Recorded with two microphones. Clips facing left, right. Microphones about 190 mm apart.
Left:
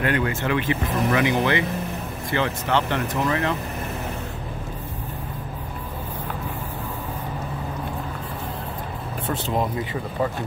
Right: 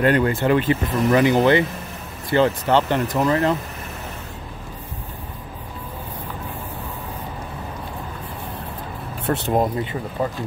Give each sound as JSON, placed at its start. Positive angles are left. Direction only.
{"t": 0.0, "sound": "speech", "side_deg": -35}
{"t": 9.2, "sound": "speech", "side_deg": -70}